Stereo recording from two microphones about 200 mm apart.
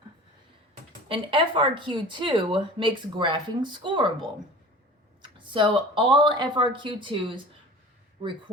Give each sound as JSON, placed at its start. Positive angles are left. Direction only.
{"t": 1.0, "sound": "speech", "side_deg": -25}
{"t": 5.5, "sound": "speech", "side_deg": -25}